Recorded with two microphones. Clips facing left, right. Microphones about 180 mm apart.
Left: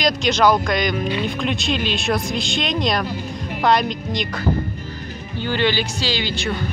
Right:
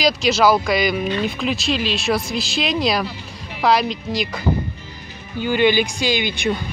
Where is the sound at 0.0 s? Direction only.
5° right (ahead or behind).